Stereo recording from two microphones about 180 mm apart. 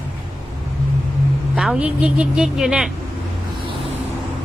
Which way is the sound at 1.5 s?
5° right (ahead or behind).